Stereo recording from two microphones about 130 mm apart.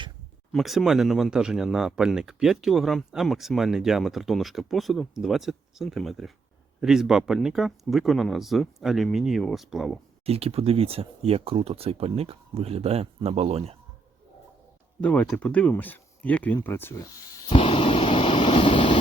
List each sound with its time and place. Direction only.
0.5 s speech: centre (ahead or behind)
10.2 s speech: 50° right (ahead or behind)
15.0 s speech: 10° left (ahead or behind)
17.5 s vehicle: 45° left (ahead or behind)